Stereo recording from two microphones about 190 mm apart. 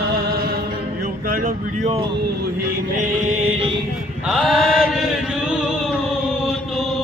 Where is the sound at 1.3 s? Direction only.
45° right (ahead or behind).